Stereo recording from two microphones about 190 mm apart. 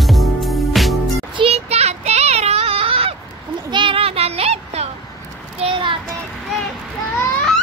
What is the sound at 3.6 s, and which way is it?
Child singing, 25° right (ahead or behind).